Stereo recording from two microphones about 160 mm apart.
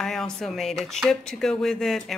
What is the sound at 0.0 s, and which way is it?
Speech, 5° left (ahead or behind).